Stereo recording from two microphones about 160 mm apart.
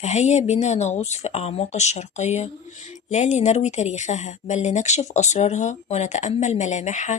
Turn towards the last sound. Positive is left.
turn(degrees=50)  # may be behind; listen again after turning